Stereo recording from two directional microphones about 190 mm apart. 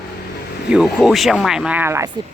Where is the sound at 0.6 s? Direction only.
5° right (ahead or behind).